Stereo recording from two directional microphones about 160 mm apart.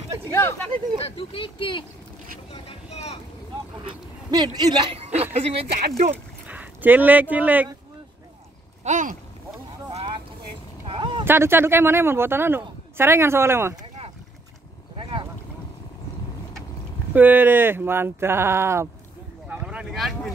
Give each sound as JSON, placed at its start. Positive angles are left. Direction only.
{"t": 0.3, "sound": "speech", "side_deg": 15}
{"t": 1.0, "sound": "speech", "side_deg": 35}
{"t": 2.5, "sound": "vehicle", "side_deg": 40}
{"t": 4.3, "sound": "a man's voice", "side_deg": -25}
{"t": 5.1, "sound": "speech", "side_deg": -40}
{"t": 6.4, "sound": "speech", "side_deg": -10}
{"t": 8.8, "sound": "speech", "side_deg": -50}
{"t": 10.9, "sound": "a sound", "side_deg": -30}
{"t": 11.2, "sound": "speech", "side_deg": -15}
{"t": 15.0, "sound": "a sound", "side_deg": -30}
{"t": 17.1, "sound": "speech", "side_deg": -10}
{"t": 19.4, "sound": "boat", "side_deg": -5}